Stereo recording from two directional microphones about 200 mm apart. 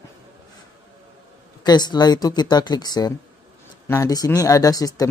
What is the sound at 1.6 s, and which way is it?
Speech, 20° left (ahead or behind).